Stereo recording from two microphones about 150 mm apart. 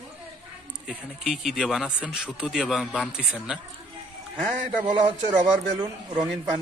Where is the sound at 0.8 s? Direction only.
Centre (ahead or behind).